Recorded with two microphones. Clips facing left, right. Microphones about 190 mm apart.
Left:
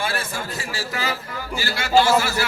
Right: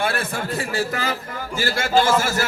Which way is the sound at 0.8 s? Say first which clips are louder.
Even; 50° right (ahead or behind).